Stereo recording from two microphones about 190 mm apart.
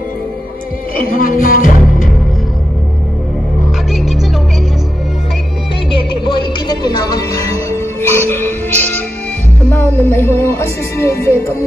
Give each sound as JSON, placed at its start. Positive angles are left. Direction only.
{"t": 1.2, "sound": "music", "side_deg": 45}
{"t": 3.9, "sound": "music", "side_deg": 0}
{"t": 6.7, "sound": "music", "side_deg": 20}
{"t": 9.7, "sound": "speech", "side_deg": 10}